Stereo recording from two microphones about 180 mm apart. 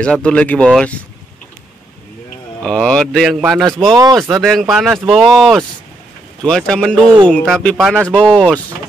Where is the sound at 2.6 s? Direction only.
5° left (ahead or behind).